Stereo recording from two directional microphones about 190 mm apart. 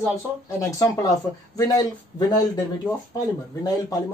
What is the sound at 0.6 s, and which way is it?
Speech, 20° left (ahead or behind).